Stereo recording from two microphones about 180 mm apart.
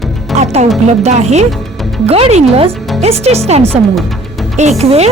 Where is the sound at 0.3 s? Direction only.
40° right (ahead or behind).